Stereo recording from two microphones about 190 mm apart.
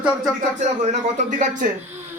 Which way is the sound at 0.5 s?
40° right (ahead or behind).